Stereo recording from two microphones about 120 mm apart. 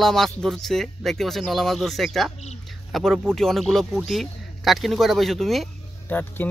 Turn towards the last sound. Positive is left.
turn(degrees=15)  # may be behind; listen again after turning